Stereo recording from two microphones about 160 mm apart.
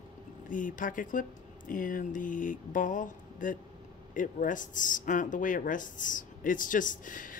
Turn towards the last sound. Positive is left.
turn(degrees=55)  # may be behind; listen again after turning